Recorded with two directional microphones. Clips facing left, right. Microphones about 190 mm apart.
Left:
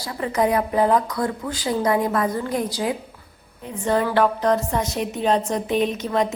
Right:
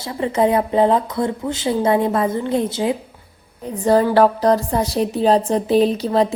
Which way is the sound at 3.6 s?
35° right (ahead or behind).